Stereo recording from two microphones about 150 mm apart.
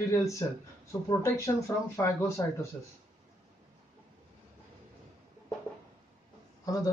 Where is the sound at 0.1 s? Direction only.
20° left (ahead or behind).